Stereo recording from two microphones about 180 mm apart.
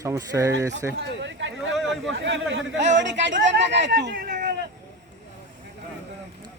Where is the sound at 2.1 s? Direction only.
85° right; by 4.2 s 65° right (ahead or behind).